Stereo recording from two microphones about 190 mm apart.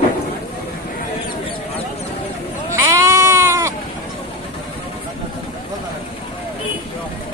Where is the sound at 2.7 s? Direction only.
15° right (ahead or behind).